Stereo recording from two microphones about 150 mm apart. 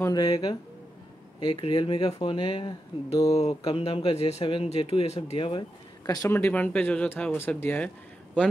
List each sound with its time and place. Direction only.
0.0 s speech: 25° left (ahead or behind)
3.3 s speech: 40° left (ahead or behind); by 7.9 s 10° left (ahead or behind)